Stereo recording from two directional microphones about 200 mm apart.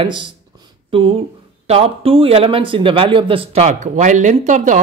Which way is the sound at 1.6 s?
30° right (ahead or behind).